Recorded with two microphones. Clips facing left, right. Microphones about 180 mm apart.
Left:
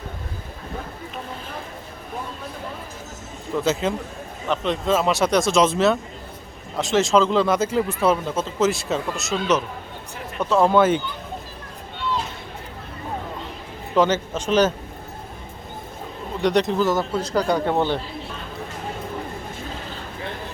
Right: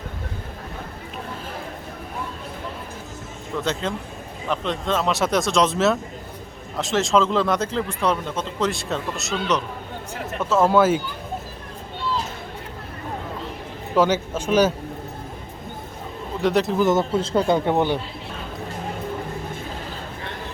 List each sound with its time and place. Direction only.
3.6 s a man's voice: 5° left (ahead or behind)
13.9 s a man's voice: 10° right (ahead or behind)
16.4 s speech: 5° right (ahead or behind)
16.8 s speech: 20° right (ahead or behind)